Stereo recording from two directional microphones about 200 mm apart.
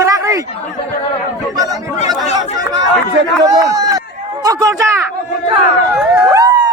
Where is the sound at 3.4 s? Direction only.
15° right (ahead or behind).